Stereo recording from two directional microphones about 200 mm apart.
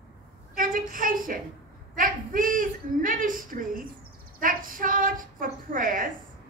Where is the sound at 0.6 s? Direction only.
45° right (ahead or behind).